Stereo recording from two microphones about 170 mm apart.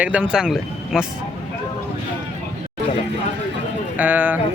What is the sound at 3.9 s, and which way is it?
Speech, 10° right (ahead or behind).